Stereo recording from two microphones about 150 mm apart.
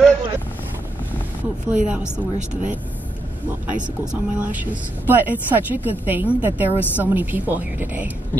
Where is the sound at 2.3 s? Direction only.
50° right (ahead or behind).